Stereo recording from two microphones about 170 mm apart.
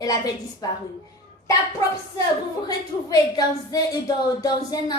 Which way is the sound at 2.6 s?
20° left (ahead or behind).